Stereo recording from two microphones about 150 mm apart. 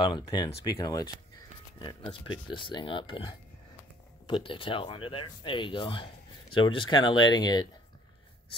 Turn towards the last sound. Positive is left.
turn(degrees=25)  # may be behind; listen again after turning